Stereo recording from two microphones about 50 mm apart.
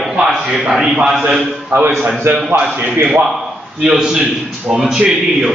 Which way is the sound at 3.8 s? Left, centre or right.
Centre.